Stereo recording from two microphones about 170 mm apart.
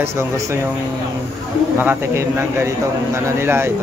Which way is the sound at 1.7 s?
15° right (ahead or behind).